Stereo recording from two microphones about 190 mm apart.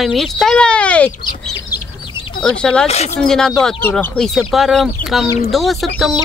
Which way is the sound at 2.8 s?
35° left (ahead or behind).